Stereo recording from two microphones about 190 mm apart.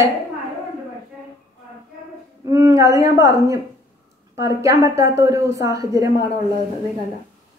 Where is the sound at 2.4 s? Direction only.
15° right (ahead or behind).